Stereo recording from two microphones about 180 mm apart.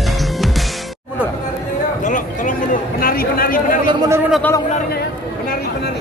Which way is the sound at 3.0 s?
55° left (ahead or behind).